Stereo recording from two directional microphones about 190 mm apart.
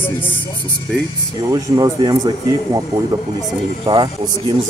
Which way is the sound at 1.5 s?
20° right (ahead or behind).